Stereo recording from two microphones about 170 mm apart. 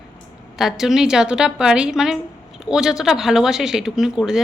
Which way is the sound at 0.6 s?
Centre (ahead or behind).